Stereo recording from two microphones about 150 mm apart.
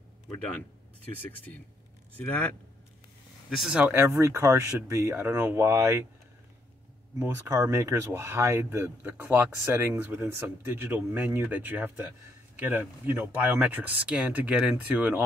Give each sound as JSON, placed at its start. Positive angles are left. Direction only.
{"t": 2.1, "sound": "a man's voice", "side_deg": 10}
{"t": 3.4, "sound": "speech", "side_deg": -5}
{"t": 7.2, "sound": "speech", "side_deg": -20}